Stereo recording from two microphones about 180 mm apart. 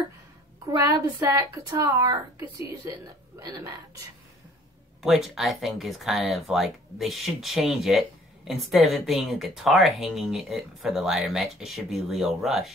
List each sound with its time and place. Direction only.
0.7 s a woman's voice: 20° right (ahead or behind)
5.0 s speech: centre (ahead or behind)